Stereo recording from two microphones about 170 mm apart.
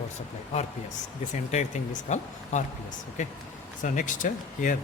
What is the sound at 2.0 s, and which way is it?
Speech, 45° left (ahead or behind).